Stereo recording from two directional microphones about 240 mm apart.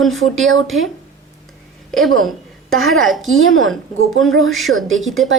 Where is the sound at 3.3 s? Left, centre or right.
Right.